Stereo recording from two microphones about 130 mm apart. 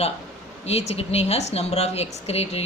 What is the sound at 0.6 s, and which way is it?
Speech, 55° left (ahead or behind).